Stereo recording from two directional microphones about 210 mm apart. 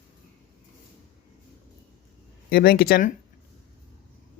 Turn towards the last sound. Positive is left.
turn(degrees=45)  # may be behind; listen again after turning